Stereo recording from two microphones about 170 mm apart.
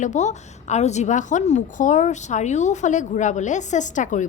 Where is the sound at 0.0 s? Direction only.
45° left (ahead or behind).